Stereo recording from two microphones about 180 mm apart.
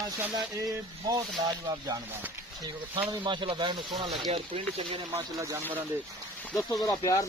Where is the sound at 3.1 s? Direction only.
25° right (ahead or behind).